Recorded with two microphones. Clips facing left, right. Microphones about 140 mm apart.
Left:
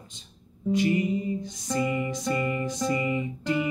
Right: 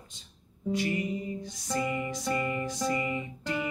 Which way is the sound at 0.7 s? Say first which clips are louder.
Left 6 dB; 20° left (ahead or behind).